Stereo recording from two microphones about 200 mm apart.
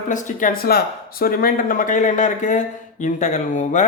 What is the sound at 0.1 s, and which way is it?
Speech, 40° left (ahead or behind).